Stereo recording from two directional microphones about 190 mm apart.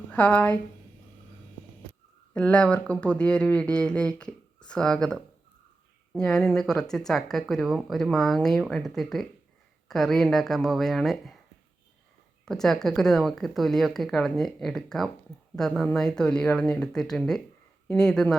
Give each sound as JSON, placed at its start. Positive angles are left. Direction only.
{"t": 0.1, "sound": "a woman's voice", "side_deg": 10}
{"t": 2.3, "sound": "speech", "side_deg": 5}
{"t": 12.5, "sound": "speech", "side_deg": 0}